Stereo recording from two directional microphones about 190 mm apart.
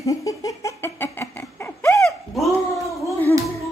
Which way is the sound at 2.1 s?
Centre (ahead or behind).